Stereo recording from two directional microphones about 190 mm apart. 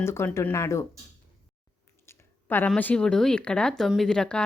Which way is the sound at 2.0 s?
10° left (ahead or behind).